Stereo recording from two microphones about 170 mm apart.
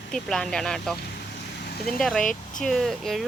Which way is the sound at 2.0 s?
5° left (ahead or behind).